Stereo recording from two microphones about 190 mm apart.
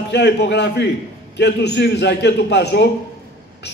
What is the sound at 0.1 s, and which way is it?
A man's voice, 60° left (ahead or behind).